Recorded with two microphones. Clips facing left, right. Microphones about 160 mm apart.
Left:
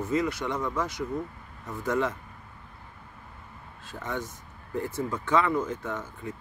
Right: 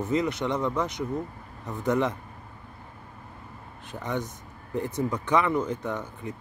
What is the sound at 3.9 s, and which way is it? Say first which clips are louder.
Speech: right 3 dB; 20° right (ahead or behind).